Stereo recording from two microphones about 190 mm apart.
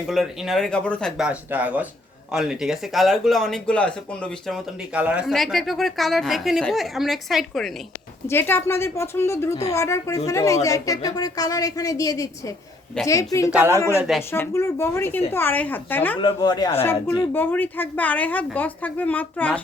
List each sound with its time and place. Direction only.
0.1 s speech: centre (ahead or behind)
8.3 s a woman's voice: 10° left (ahead or behind)
14.0 s speech: 5° right (ahead or behind)
14.3 s a woman's voice: 10° left (ahead or behind)
16.2 s a woman's voice: 25° left (ahead or behind)